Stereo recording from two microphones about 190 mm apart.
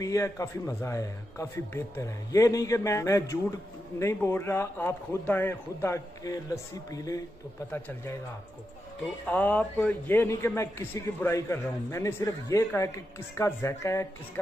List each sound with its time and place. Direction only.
0.0 s a man's voice: 15° left (ahead or behind)
9.3 s a man's voice: 10° left (ahead or behind)